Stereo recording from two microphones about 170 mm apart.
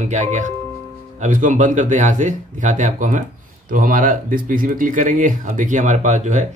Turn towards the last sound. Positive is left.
turn(degrees=-45)  # may be behind; listen again after turning